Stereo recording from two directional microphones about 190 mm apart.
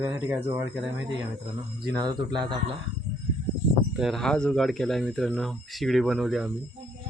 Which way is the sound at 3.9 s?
Centre (ahead or behind).